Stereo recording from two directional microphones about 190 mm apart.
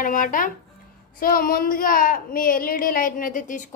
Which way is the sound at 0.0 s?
45° left (ahead or behind).